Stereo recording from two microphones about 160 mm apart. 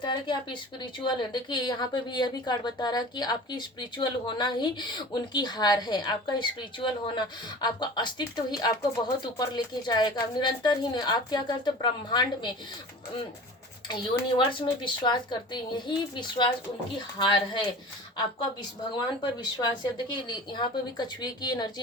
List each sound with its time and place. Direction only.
0.0 s a woman's voice: 30° left (ahead or behind)
13.8 s a woman's voice: 30° left (ahead or behind)
19.8 s a woman's voice: 30° left (ahead or behind)